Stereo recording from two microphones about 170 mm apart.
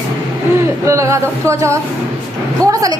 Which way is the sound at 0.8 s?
15° right (ahead or behind).